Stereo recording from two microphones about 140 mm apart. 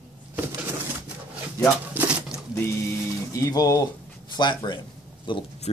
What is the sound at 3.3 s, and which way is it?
Speech, 25° left (ahead or behind).